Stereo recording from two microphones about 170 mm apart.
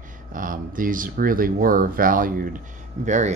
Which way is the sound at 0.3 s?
55° right (ahead or behind).